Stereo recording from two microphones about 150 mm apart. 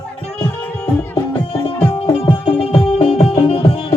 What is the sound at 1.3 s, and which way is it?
Music, 40° left (ahead or behind).